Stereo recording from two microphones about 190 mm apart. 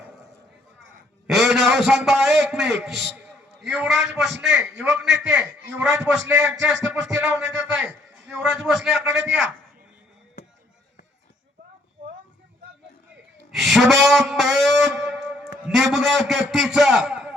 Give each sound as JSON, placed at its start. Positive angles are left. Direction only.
{"t": 0.8, "sound": "a sound", "side_deg": -90}
{"t": 1.3, "sound": "a man's voice", "side_deg": 0}
{"t": 9.0, "sound": "a man's voice", "side_deg": -10}
{"t": 13.5, "sound": "a man's voice", "side_deg": 0}